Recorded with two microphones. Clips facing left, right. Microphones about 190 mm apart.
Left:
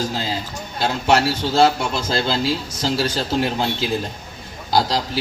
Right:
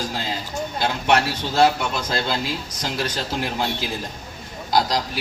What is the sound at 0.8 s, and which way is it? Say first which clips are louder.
A man's voice: left 3 dB; 25° left (ahead or behind).